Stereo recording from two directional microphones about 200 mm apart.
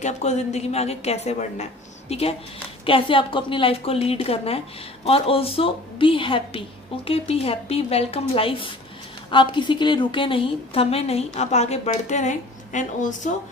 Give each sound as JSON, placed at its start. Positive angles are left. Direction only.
{"t": 0.0, "sound": "a woman's voice", "side_deg": 35}